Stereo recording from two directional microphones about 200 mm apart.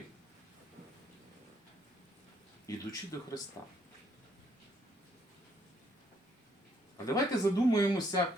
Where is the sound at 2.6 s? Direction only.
15° left (ahead or behind).